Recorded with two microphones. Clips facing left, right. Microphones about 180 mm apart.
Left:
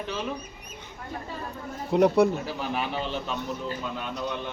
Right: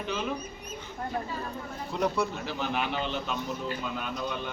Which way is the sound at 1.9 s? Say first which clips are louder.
Left 9 dB; 60° left (ahead or behind).